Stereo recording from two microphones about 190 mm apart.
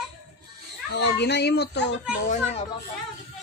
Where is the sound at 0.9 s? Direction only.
60° left (ahead or behind).